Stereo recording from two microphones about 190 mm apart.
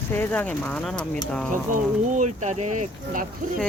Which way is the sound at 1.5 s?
40° right (ahead or behind).